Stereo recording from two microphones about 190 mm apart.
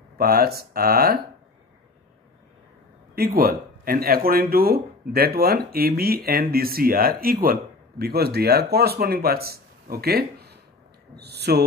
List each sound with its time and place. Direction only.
0.2 s speech: 55° right (ahead or behind)
3.2 s speech: 50° right (ahead or behind)